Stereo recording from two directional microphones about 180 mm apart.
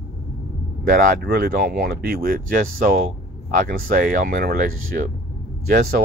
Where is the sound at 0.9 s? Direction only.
55° right (ahead or behind).